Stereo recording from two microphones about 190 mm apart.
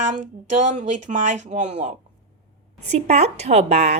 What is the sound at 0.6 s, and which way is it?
A woman's voice, 40° right (ahead or behind).